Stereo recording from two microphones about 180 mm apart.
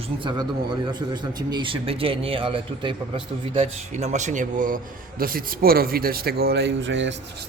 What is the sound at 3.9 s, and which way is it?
Speech, 40° right (ahead or behind).